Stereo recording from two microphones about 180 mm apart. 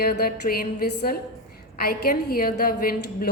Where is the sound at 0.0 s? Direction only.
55° left (ahead or behind).